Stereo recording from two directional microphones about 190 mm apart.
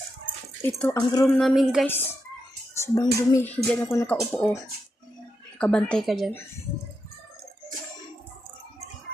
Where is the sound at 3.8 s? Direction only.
10° left (ahead or behind).